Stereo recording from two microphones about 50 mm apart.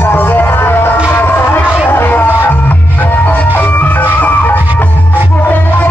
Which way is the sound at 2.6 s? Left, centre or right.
Left.